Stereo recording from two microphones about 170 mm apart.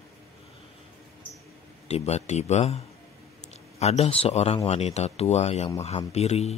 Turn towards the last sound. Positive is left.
turn(degrees=40)  # may be behind; listen again after turning